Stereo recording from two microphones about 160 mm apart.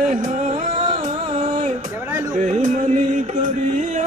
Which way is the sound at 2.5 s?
50° right (ahead or behind).